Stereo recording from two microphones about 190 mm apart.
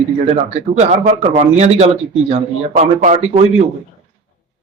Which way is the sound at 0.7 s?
35° right (ahead or behind).